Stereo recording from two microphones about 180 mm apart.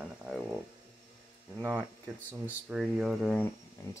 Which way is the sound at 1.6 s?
10° right (ahead or behind).